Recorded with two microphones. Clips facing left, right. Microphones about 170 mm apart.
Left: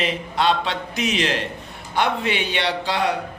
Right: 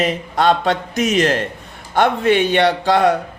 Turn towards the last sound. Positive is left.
turn(degrees=-45)  # may be behind; listen again after turning